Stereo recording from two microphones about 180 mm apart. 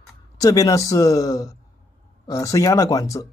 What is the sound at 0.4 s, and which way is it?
Speech, 20° left (ahead or behind).